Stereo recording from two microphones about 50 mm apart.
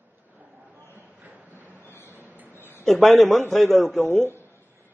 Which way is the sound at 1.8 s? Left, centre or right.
Left.